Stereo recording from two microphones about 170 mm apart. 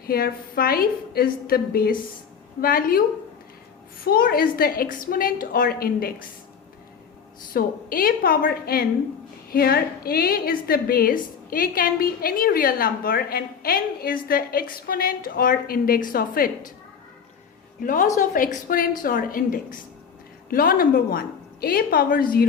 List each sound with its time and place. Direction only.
0.0 s a woman's voice: 60° left (ahead or behind)
4.0 s a woman's voice: 60° left (ahead or behind)
7.5 s a woman's voice: 60° left (ahead or behind)
17.7 s a woman's voice: 50° left (ahead or behind)